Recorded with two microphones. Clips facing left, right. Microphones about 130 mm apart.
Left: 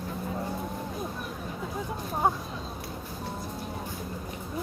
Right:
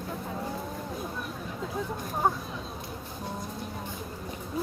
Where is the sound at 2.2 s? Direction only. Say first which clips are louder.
Left 1 dB; 10° left (ahead or behind).